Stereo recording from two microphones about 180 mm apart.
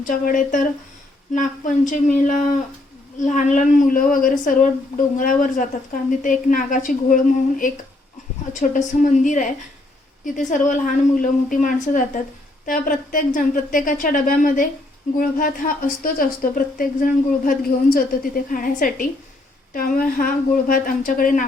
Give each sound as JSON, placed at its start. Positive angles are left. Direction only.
{"t": 0.0, "sound": "a woman's voice", "side_deg": 45}
{"t": 8.5, "sound": "a woman's voice", "side_deg": 45}